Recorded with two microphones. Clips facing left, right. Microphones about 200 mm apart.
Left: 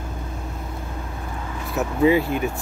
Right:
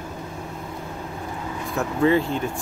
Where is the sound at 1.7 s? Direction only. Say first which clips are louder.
Left 2 dB; 10° left (ahead or behind).